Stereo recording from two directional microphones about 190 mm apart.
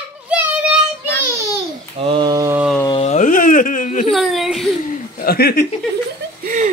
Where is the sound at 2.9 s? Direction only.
35° left (ahead or behind).